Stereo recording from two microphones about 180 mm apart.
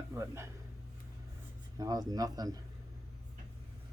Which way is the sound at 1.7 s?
20° right (ahead or behind).